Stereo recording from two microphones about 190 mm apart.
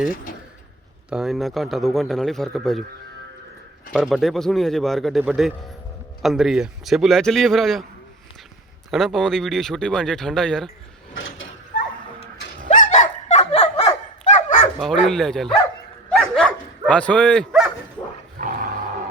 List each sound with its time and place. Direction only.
1.1 s speech: centre (ahead or behind)
3.9 s speech: centre (ahead or behind)
8.9 s speech: centre (ahead or behind)
11.1 s a sound: 90° left
12.6 s dog: 45° left (ahead or behind)
14.8 s speech: centre (ahead or behind)
18.3 s a sound: 45° right (ahead or behind)